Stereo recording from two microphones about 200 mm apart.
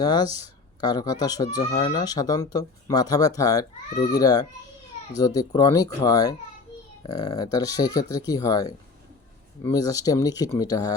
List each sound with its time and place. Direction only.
0.0 s speech: 20° left (ahead or behind)